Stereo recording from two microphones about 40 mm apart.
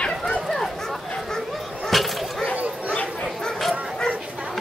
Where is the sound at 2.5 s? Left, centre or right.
Right.